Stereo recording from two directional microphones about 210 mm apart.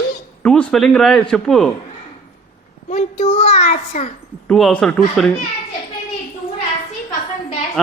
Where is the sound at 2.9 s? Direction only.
35° left (ahead or behind).